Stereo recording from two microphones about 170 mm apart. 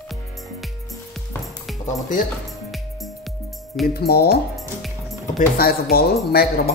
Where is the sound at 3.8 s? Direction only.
65° left (ahead or behind).